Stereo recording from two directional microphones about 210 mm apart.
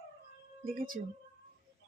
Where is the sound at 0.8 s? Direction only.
40° right (ahead or behind).